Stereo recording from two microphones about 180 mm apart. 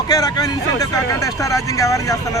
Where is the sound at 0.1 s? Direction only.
20° left (ahead or behind).